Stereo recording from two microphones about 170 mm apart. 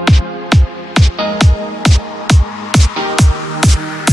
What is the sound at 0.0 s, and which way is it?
Music, centre (ahead or behind).